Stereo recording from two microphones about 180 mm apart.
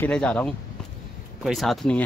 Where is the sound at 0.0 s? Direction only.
5° left (ahead or behind).